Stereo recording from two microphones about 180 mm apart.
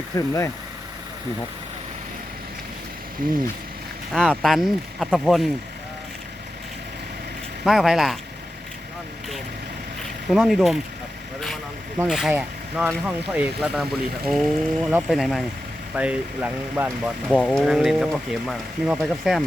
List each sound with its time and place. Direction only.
0.2 s speech: 15° left (ahead or behind)
3.2 s speech: 50° right (ahead or behind)
4.1 s speech: centre (ahead or behind)
7.6 s speech: centre (ahead or behind)
10.2 s speech: centre (ahead or behind)
11.9 s speech: centre (ahead or behind)
17.2 s speech: 5° left (ahead or behind)